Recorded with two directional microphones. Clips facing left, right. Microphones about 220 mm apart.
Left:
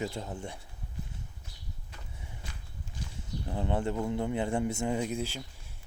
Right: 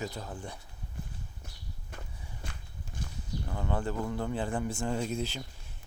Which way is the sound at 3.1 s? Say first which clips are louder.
Left 1 dB; 30° left (ahead or behind).